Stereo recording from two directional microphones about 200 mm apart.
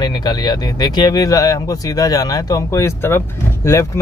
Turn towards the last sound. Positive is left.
turn(degrees=15)  # may be behind; listen again after turning